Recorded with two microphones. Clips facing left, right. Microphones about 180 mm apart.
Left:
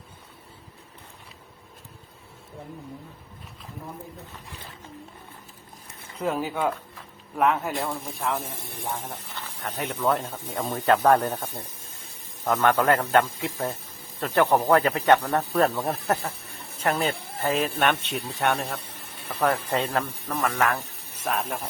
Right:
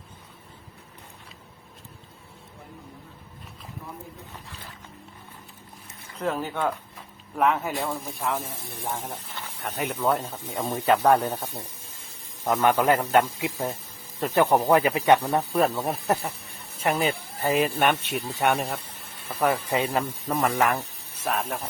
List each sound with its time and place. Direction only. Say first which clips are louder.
6.1 s speech: left 1 dB; 10° left (ahead or behind)
9.6 s speech: even; 10° right (ahead or behind)
21.2 s speech: even; centre (ahead or behind)